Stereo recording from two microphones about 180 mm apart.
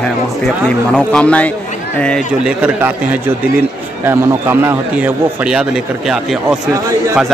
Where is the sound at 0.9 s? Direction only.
5° left (ahead or behind).